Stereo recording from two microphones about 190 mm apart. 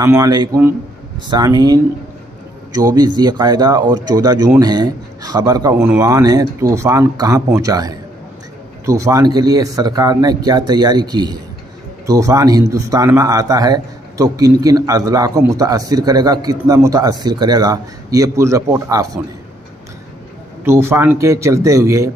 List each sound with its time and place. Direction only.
0.0 s speech: 15° right (ahead or behind)
20.6 s speech: 15° right (ahead or behind)